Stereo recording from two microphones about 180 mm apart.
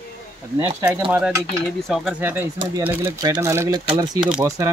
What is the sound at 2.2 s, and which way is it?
Speech, 10° right (ahead or behind).